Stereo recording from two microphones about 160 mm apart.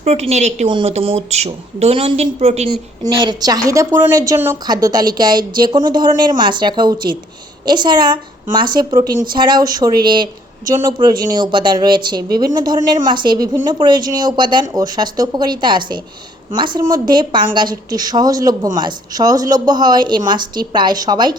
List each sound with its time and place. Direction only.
0.0 s a woman's voice: 45° right (ahead or behind)
3.0 s speech: 30° right (ahead or behind)